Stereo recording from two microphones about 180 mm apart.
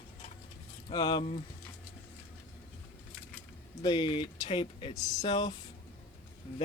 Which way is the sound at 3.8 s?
25° left (ahead or behind).